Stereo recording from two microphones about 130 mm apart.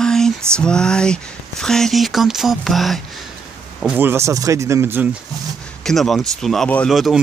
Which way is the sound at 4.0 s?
20° right (ahead or behind).